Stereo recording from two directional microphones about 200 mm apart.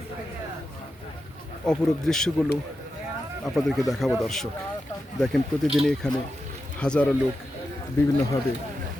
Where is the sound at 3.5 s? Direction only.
Centre (ahead or behind).